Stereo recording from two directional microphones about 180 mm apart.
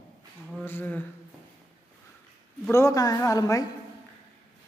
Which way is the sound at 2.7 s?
15° left (ahead or behind).